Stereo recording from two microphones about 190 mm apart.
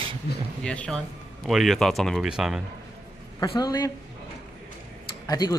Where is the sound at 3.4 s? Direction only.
20° left (ahead or behind).